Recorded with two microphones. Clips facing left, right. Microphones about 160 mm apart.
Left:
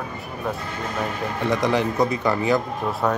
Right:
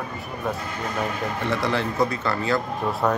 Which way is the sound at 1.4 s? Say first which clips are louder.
Left 4 dB; 15° left (ahead or behind).